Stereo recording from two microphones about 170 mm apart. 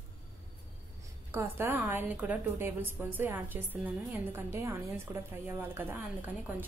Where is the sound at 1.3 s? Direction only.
15° right (ahead or behind).